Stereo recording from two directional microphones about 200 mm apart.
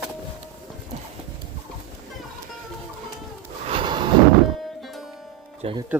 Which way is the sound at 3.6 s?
25° right (ahead or behind).